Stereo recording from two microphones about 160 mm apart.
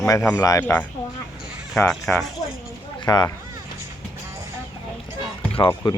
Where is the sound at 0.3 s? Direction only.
15° left (ahead or behind).